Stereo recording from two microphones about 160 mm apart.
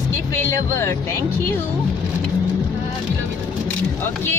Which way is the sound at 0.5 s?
15° left (ahead or behind).